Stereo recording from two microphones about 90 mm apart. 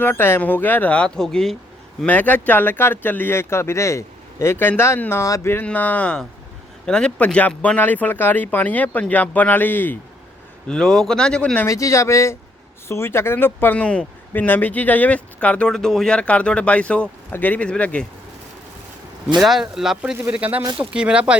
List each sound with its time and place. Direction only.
0.0 s speech: 25° left (ahead or behind); by 1.5 s 5° left (ahead or behind)
2.0 s speech: 20° left (ahead or behind)
10.7 s speech: 5° left (ahead or behind)
11.6 s speech: 35° left (ahead or behind); by 18.0 s 15° left (ahead or behind)
19.4 s speech: 5° right (ahead or behind)
20.3 s speech: 15° right (ahead or behind)